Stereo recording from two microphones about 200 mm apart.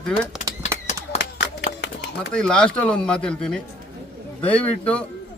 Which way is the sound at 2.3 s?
5° left (ahead or behind).